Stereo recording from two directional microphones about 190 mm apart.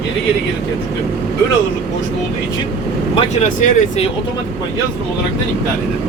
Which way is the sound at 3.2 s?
35° left (ahead or behind).